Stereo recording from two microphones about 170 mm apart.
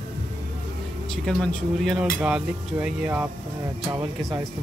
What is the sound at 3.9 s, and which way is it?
Speech, 20° right (ahead or behind).